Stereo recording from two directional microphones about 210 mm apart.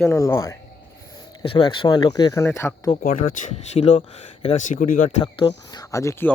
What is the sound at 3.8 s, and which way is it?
Speech, 30° left (ahead or behind).